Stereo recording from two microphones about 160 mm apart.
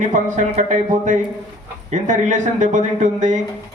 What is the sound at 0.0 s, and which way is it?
Speech, 50° right (ahead or behind).